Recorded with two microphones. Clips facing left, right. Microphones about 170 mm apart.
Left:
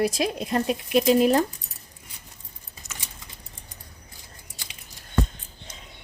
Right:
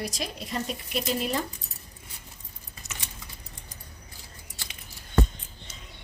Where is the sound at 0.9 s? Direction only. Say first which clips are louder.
Left 11 dB; 90° left.